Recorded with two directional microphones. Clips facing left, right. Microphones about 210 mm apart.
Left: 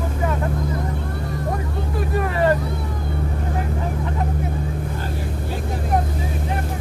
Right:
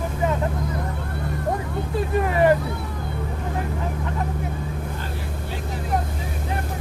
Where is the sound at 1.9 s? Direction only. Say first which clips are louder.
Right 1 dB; 20° right (ahead or behind).